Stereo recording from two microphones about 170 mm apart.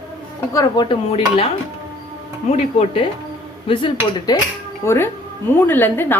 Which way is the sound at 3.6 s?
30° left (ahead or behind).